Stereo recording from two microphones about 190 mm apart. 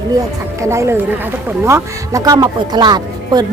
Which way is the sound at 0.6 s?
15° right (ahead or behind).